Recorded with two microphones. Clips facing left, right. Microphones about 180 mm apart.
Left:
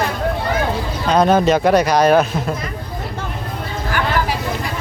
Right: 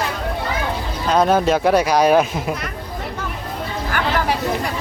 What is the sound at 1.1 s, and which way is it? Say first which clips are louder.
Speech: left 2 dB; 5° right (ahead or behind).